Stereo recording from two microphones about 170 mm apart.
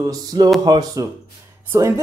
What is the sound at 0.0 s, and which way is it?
A man's voice, 20° right (ahead or behind).